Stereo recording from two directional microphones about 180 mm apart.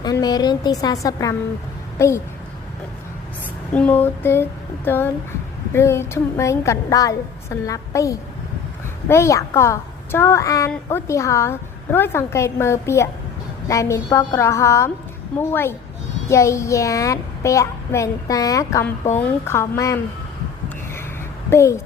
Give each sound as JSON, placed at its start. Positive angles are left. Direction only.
{"t": 0.0, "sound": "a woman's voice", "side_deg": 20}
{"t": 3.8, "sound": "a child's voice", "side_deg": 10}
{"t": 21.5, "sound": "a child's voice", "side_deg": 15}